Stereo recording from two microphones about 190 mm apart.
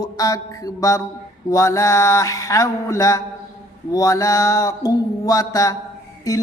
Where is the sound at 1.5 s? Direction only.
15° left (ahead or behind).